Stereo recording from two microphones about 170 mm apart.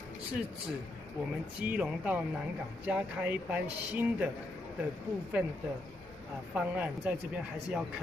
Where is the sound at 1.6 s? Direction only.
10° right (ahead or behind).